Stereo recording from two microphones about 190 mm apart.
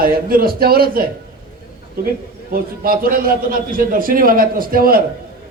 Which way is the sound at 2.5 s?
50° right (ahead or behind).